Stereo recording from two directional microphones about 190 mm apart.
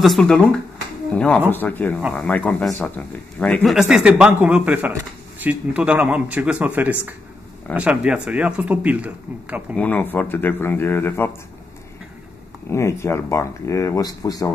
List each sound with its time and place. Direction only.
0.0 s speech: centre (ahead or behind)
9.8 s speech: 10° left (ahead or behind)
12.6 s speech: 15° left (ahead or behind)